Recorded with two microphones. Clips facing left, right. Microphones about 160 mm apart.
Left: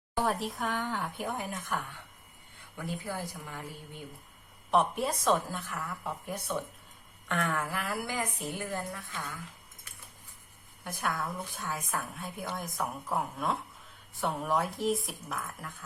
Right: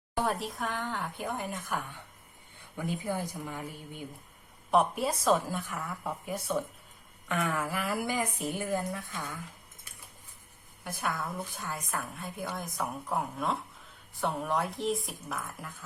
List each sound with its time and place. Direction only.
0.2 s a woman's voice: centre (ahead or behind)
2.7 s a woman's voice: 15° right (ahead or behind)
4.7 s a woman's voice: 5° right (ahead or behind)
10.8 s a woman's voice: centre (ahead or behind)